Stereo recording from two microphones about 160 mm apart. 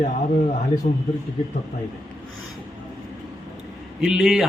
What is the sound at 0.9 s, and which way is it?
Speech, 55° left (ahead or behind).